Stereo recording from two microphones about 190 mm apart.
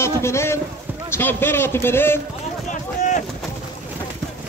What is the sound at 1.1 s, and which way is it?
Speech, 10° left (ahead or behind).